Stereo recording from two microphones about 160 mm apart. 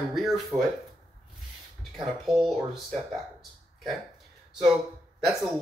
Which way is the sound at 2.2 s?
Centre (ahead or behind).